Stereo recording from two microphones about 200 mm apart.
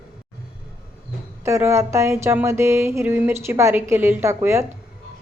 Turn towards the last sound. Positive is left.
turn(degrees=-15)  # may be behind; listen again after turning